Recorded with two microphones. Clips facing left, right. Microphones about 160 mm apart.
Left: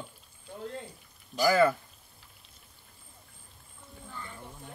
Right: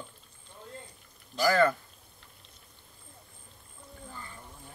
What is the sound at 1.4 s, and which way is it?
Speech, 10° left (ahead or behind).